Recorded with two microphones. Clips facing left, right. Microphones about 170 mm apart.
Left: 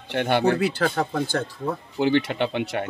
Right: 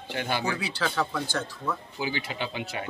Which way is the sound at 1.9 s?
65° left (ahead or behind).